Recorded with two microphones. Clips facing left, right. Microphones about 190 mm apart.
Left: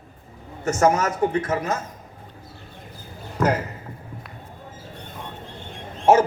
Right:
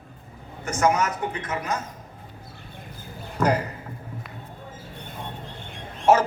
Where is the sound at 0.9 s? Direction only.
30° left (ahead or behind).